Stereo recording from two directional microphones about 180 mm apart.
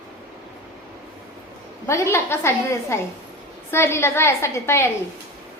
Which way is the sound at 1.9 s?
15° left (ahead or behind).